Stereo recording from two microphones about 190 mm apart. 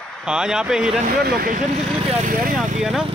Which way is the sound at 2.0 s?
35° right (ahead or behind).